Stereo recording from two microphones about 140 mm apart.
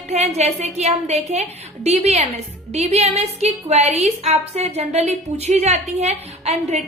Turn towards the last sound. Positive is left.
turn(degrees=-55)  # may be behind; listen again after turning